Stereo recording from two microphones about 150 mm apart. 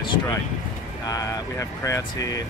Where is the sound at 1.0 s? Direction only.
25° left (ahead or behind).